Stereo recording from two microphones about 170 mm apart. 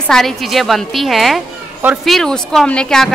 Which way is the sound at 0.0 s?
5° left (ahead or behind).